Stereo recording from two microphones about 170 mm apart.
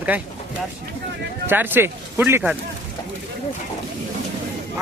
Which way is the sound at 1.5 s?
10° right (ahead or behind).